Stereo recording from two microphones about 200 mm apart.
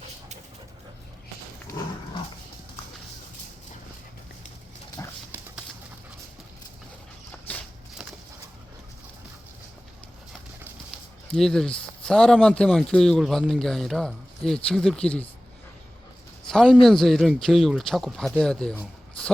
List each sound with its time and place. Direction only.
1.7 s dog: 45° left (ahead or behind)
5.0 s dog: 15° left (ahead or behind)
5.3 s clip-clop: 10° right (ahead or behind)
7.5 s walk: 10° left (ahead or behind)
11.3 s speech: 5° left (ahead or behind)
16.5 s a man's voice: centre (ahead or behind)